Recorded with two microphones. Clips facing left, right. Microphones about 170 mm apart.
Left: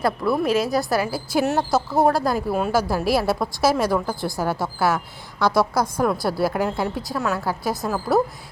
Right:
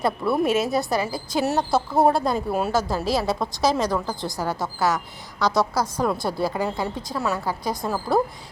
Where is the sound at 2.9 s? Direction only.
10° left (ahead or behind).